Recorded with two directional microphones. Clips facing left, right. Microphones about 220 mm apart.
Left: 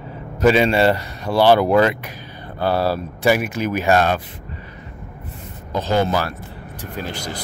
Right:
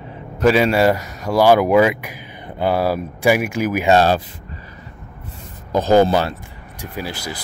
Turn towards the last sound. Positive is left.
turn(degrees=-10)  # may be behind; listen again after turning